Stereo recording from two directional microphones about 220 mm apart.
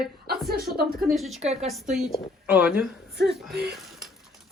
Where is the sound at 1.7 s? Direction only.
Centre (ahead or behind).